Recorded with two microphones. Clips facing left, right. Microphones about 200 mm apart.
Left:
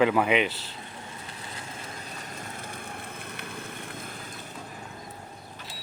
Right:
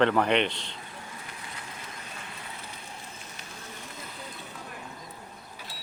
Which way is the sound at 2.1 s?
45° left (ahead or behind).